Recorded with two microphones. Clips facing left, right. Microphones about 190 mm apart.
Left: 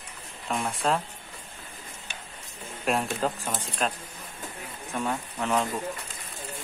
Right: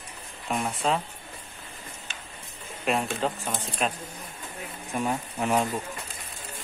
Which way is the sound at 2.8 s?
Centre (ahead or behind).